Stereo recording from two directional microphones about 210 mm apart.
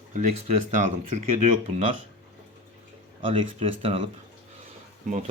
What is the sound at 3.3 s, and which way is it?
Speech, 25° right (ahead or behind).